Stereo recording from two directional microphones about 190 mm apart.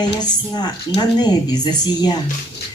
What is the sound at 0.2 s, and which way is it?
A woman's voice, 20° left (ahead or behind).